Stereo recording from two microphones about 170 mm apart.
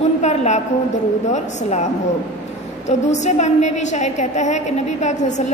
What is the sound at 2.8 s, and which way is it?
A woman's voice, 45° left (ahead or behind).